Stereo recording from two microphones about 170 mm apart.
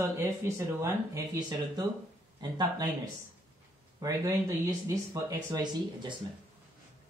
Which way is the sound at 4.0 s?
20° right (ahead or behind).